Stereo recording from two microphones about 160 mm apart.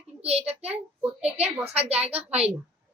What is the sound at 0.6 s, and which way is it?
Speech, 10° right (ahead or behind).